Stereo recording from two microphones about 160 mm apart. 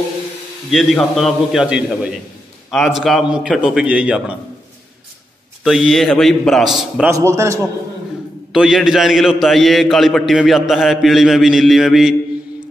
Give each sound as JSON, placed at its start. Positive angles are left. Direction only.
{"t": 0.7, "sound": "a man's voice", "side_deg": 0}
{"t": 5.6, "sound": "a man's voice", "side_deg": 0}
{"t": 7.1, "sound": "a man's voice", "side_deg": -20}
{"t": 8.5, "sound": "a man's voice", "side_deg": -5}